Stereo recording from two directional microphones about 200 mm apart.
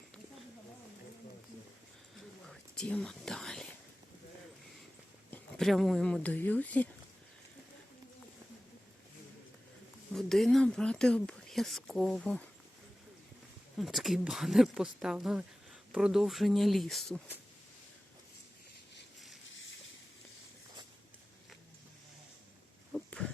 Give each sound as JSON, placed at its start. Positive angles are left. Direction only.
{"t": 2.1, "sound": "whispering", "side_deg": 5}
{"t": 5.3, "sound": "speech", "side_deg": 0}
{"t": 10.1, "sound": "speech", "side_deg": 0}
{"t": 13.7, "sound": "speech", "side_deg": 0}
{"t": 19.5, "sound": "a sound", "side_deg": 70}
{"t": 22.9, "sound": "a sound", "side_deg": 5}